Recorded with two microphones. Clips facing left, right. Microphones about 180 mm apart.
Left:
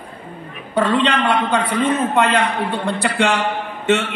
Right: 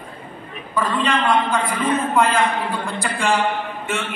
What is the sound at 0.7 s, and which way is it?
A man's voice, 75° left (ahead or behind).